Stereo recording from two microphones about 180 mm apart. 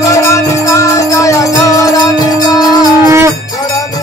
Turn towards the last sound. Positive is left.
turn(degrees=-15)  # may be behind; listen again after turning